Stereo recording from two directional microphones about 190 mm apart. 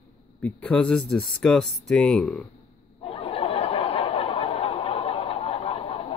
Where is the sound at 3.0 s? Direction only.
30° left (ahead or behind).